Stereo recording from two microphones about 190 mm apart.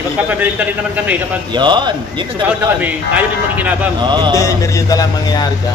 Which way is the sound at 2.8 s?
10° right (ahead or behind).